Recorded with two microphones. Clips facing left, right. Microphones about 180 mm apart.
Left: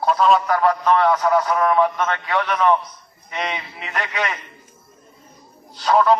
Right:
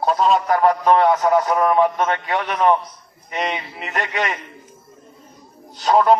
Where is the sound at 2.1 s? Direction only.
25° right (ahead or behind).